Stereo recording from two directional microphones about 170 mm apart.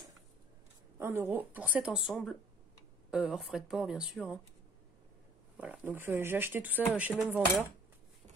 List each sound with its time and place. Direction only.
0.9 s speech: 15° right (ahead or behind)
5.6 s speech: 10° right (ahead or behind)